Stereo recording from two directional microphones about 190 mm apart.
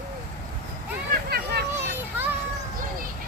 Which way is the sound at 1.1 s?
55° right (ahead or behind).